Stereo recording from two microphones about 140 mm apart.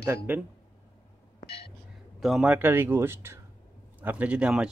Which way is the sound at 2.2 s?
Centre (ahead or behind).